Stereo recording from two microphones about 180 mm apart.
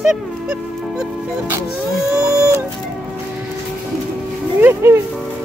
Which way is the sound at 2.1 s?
15° right (ahead or behind).